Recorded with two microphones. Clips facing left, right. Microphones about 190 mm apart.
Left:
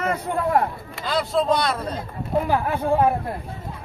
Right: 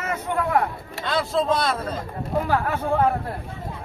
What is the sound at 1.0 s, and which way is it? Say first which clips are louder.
Speech: left 1 dB; centre (ahead or behind).